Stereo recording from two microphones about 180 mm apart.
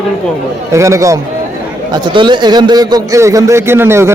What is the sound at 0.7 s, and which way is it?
A man's voice, 15° right (ahead or behind).